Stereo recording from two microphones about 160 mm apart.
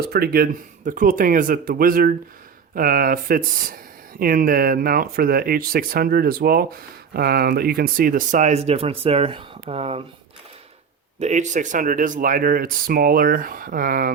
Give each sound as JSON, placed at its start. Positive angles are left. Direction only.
{"t": 0.0, "sound": "speech", "side_deg": -75}
{"t": 0.9, "sound": "speech", "side_deg": -55}
{"t": 11.2, "sound": "speech", "side_deg": -50}